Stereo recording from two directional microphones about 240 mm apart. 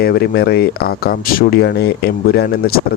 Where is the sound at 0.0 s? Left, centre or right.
Left.